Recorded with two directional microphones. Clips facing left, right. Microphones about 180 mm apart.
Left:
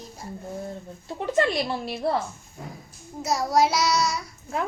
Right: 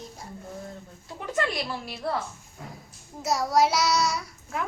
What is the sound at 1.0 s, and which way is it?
A woman's voice, 25° left (ahead or behind).